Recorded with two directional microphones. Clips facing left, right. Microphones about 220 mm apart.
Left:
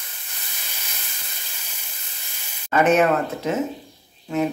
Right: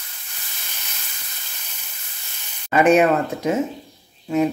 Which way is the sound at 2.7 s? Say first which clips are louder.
Right 2 dB; 10° right (ahead or behind).